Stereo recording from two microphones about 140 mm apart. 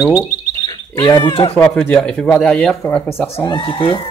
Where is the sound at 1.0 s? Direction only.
25° left (ahead or behind).